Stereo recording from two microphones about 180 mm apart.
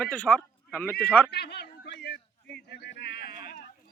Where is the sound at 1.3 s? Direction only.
65° left (ahead or behind).